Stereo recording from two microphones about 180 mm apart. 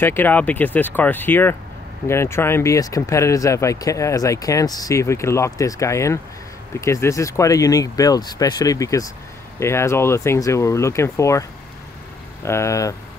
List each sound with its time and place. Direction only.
0.0 s speech: 10° left (ahead or behind)
12.4 s speech: 15° left (ahead or behind)